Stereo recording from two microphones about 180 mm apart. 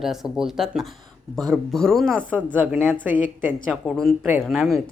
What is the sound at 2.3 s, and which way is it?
Speech, 10° right (ahead or behind).